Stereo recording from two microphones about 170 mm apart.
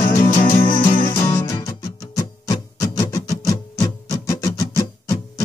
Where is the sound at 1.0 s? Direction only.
25° left (ahead or behind).